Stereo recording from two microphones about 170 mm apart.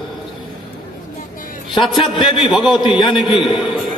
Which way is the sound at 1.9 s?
25° left (ahead or behind).